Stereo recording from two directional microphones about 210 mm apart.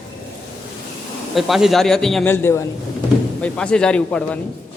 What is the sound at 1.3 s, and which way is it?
A man's voice, centre (ahead or behind).